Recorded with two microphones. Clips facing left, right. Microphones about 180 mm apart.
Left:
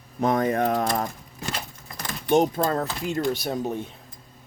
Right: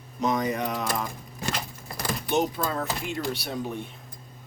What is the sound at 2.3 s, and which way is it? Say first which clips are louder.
Speech: left 6 dB; 45° left (ahead or behind).